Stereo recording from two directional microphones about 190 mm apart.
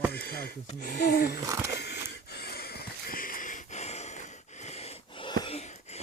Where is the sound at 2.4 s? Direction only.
55° left (ahead or behind); by 4.2 s 35° left (ahead or behind).